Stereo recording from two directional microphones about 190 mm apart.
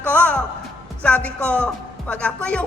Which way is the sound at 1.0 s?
5° left (ahead or behind).